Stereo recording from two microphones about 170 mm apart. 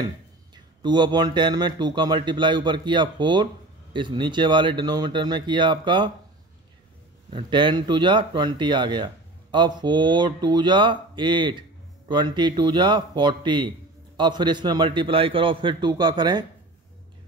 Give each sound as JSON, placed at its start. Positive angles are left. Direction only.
{"t": 0.8, "sound": "speech", "side_deg": -25}
{"t": 7.3, "sound": "speech", "side_deg": -30}